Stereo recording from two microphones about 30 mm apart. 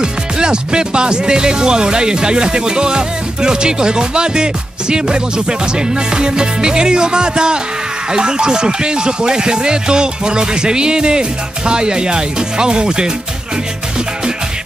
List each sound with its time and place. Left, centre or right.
0.0 s music: right